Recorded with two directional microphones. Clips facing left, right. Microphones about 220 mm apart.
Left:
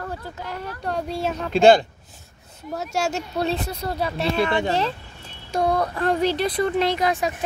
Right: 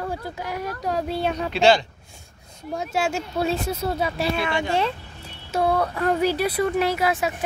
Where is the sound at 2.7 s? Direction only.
Centre (ahead or behind).